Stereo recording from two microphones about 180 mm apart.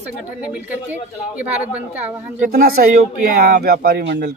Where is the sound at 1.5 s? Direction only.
10° right (ahead or behind).